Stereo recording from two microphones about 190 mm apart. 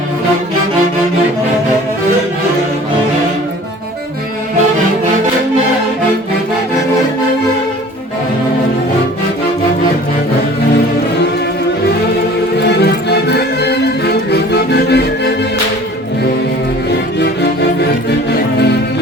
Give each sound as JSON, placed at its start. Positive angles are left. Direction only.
{"t": 12.6, "sound": "music", "side_deg": 60}